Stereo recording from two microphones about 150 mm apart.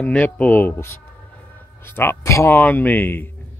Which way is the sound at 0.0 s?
10° left (ahead or behind).